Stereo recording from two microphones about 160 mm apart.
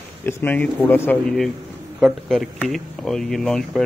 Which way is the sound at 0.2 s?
15° left (ahead or behind).